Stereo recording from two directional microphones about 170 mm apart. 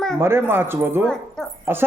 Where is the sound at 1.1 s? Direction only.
5° left (ahead or behind).